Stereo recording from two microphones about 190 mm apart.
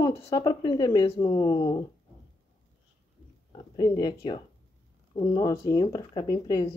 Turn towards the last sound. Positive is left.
turn(degrees=20)  # may be behind; listen again after turning